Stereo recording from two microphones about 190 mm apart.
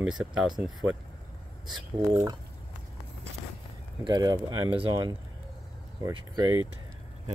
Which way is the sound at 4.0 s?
20° right (ahead or behind).